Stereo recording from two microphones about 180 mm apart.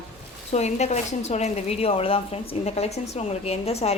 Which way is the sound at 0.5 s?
40° left (ahead or behind).